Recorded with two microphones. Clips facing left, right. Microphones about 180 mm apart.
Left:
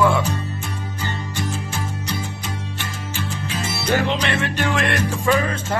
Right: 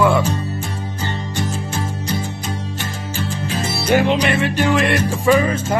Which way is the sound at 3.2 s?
35° right (ahead or behind).